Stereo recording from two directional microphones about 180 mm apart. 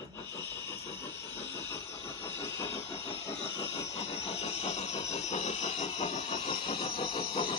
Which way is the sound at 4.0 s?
35° left (ahead or behind).